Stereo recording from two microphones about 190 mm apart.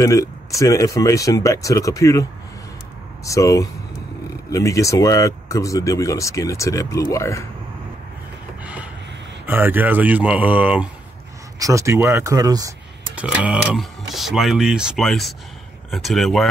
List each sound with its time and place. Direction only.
0.0 s speech: 15° left (ahead or behind)
3.3 s speech: 15° left (ahead or behind)
9.5 s speech: 10° right (ahead or behind)
13.1 s speech: 5° right (ahead or behind)